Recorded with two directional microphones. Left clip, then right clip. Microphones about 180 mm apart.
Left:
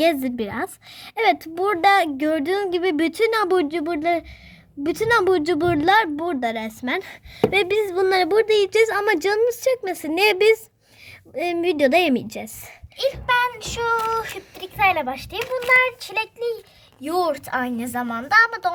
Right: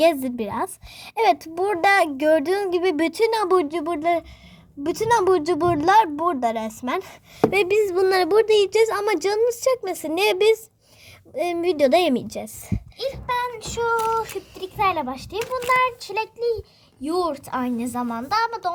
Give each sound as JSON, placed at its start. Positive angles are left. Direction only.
{"t": 0.0, "sound": "a woman's voice", "side_deg": 0}
{"t": 13.0, "sound": "a woman's voice", "side_deg": 50}